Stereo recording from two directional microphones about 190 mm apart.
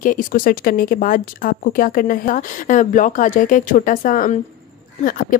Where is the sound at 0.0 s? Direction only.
45° left (ahead or behind).